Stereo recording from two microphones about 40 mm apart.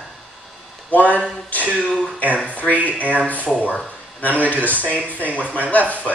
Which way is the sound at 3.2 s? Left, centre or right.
Left.